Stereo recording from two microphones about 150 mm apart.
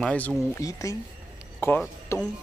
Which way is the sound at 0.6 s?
20° left (ahead or behind).